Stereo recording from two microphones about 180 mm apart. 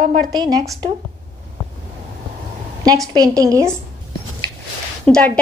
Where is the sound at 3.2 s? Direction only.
20° right (ahead or behind).